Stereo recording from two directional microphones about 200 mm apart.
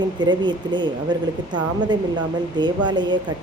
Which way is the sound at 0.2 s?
20° right (ahead or behind).